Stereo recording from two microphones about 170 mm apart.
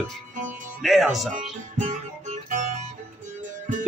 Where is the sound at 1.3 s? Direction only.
45° right (ahead or behind).